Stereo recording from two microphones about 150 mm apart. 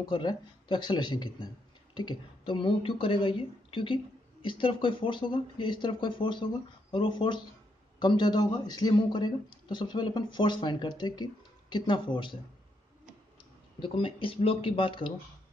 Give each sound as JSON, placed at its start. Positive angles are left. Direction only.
{"t": 0.0, "sound": "a man's voice", "side_deg": 30}
{"t": 13.7, "sound": "a woman's voice", "side_deg": 35}